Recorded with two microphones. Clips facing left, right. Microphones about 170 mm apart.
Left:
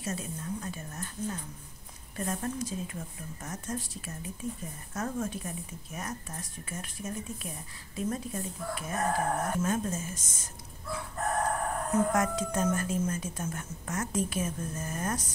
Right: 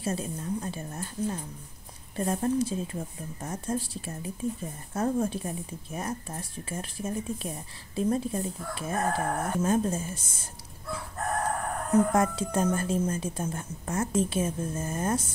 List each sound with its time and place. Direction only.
0.0 s speech: 30° right (ahead or behind)
11.9 s a woman's voice: 30° right (ahead or behind)